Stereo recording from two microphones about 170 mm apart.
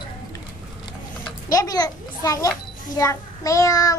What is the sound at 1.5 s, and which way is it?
A child's voice, 20° left (ahead or behind).